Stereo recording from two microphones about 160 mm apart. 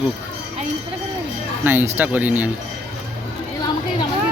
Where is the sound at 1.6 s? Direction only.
15° right (ahead or behind).